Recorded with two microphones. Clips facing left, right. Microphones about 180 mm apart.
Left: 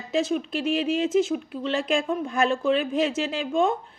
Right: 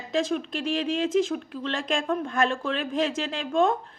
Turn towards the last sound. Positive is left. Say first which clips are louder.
# even
turn(degrees=5)  # may be behind; listen again after turning